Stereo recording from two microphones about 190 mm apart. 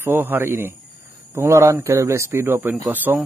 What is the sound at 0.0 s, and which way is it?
A man's voice, 10° right (ahead or behind).